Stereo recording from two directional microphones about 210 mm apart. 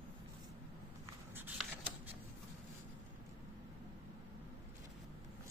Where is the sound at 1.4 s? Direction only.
10° right (ahead or behind).